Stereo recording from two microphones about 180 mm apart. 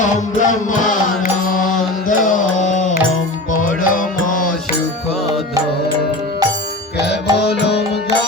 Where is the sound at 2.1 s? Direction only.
45° left (ahead or behind).